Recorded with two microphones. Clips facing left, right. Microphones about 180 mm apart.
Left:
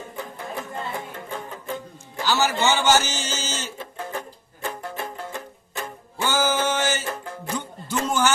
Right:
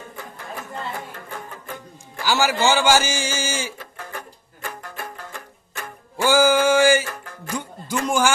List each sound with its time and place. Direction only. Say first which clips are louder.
0.9 s music: left 2 dB; 20° left (ahead or behind)
2.2 s a man's voice: right 2 dB; 10° right (ahead or behind)
3.8 s music: left 4 dB; 20° left (ahead or behind)
6.2 s a sound: right 6 dB; 10° right (ahead or behind)
7.0 s music: left 3 dB; 20° left (ahead or behind)
7.5 s music: right 2 dB; 10° right (ahead or behind)
8.0 s a sound: right 2 dB; 10° right (ahead or behind)